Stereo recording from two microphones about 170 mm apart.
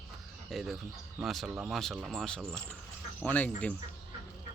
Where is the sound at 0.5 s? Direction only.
Centre (ahead or behind).